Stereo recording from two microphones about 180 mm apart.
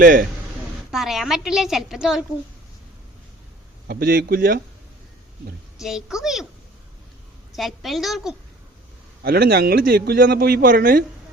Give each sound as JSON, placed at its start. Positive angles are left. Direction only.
{"t": 0.0, "sound": "speech", "side_deg": -50}
{"t": 0.9, "sound": "a woman's voice", "side_deg": 0}
{"t": 3.8, "sound": "a man's voice", "side_deg": -55}
{"t": 5.8, "sound": "a woman's voice", "side_deg": -5}
{"t": 7.5, "sound": "a woman's voice", "side_deg": 0}
{"t": 9.2, "sound": "a man's voice", "side_deg": -60}